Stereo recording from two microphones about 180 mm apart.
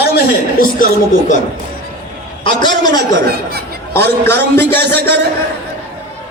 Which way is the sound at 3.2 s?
60° right (ahead or behind).